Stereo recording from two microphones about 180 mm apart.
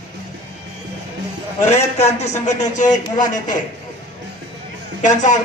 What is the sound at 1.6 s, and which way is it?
A man's voice, 40° left (ahead or behind).